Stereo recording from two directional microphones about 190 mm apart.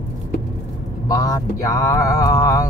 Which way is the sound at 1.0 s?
20° left (ahead or behind).